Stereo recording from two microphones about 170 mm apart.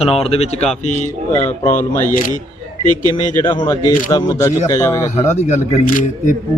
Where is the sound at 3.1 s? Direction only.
25° left (ahead or behind).